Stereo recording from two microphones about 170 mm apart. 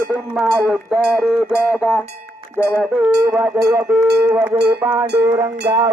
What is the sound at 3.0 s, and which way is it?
Speech, 10° right (ahead or behind).